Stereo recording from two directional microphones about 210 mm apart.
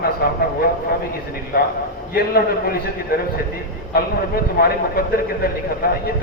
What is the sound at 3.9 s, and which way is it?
Speech, 50° left (ahead or behind).